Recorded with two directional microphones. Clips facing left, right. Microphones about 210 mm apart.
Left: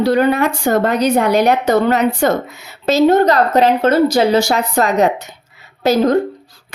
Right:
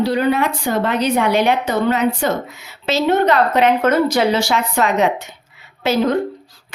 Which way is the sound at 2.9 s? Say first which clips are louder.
Left 4 dB; 40° left (ahead or behind).